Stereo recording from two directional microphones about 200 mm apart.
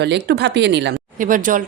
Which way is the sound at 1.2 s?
40° right (ahead or behind).